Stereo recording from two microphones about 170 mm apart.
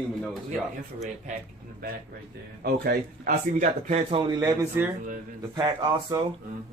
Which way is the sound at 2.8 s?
55° right (ahead or behind).